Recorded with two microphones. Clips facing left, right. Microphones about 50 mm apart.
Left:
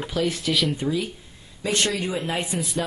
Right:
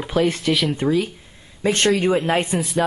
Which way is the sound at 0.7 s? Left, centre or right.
Right.